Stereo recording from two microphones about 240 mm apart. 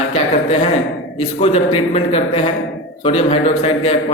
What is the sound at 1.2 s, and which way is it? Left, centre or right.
A man's voice, left.